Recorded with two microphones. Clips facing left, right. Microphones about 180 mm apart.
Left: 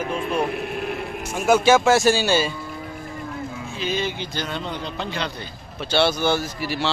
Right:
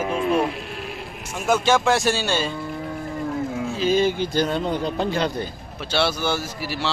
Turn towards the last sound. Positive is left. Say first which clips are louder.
# left 2 dB
turn(degrees=-5)  # may be behind; listen again after turning